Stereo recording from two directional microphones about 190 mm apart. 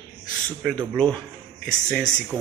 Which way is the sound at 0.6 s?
5° left (ahead or behind).